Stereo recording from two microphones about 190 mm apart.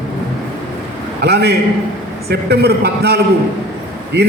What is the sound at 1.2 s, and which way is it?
A man's voice, 60° right (ahead or behind).